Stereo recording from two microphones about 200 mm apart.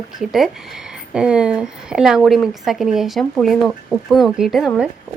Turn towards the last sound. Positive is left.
turn(degrees=0)  # may be behind; listen again after turning